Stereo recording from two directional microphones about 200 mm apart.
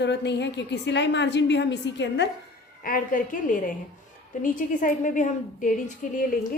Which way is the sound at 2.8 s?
45° left (ahead or behind).